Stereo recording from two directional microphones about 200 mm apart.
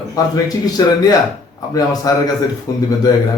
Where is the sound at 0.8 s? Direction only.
20° left (ahead or behind).